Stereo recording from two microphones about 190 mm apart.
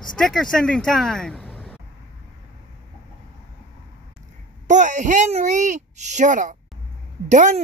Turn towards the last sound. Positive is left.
turn(degrees=-40)  # may be behind; listen again after turning